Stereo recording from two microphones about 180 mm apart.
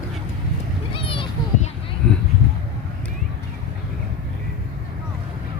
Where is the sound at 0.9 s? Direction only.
30° left (ahead or behind).